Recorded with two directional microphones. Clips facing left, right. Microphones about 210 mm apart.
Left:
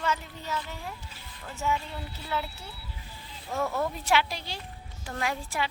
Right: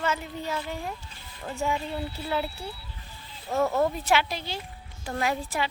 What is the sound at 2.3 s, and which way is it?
Speech, 30° right (ahead or behind).